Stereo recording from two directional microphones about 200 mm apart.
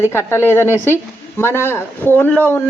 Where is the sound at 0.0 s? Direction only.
10° left (ahead or behind).